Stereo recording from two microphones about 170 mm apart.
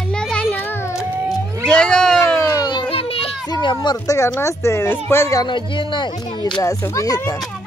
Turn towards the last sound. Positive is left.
turn(degrees=20)  # may be behind; listen again after turning